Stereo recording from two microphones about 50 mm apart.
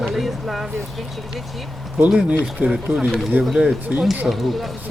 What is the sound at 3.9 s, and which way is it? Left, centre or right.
Speech, right.